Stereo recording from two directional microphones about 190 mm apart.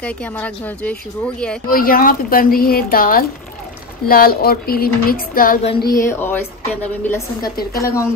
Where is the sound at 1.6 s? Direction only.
50° left (ahead or behind).